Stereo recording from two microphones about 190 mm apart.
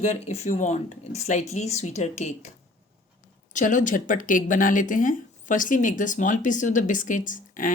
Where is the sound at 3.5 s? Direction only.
40° left (ahead or behind).